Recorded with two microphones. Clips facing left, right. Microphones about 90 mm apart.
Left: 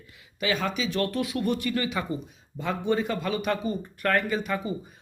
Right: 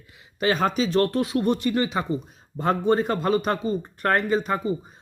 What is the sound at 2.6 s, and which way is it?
A man's voice, 45° right (ahead or behind).